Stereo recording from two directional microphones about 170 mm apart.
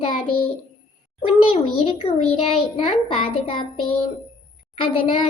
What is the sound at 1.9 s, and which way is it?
A child's voice, 35° left (ahead or behind).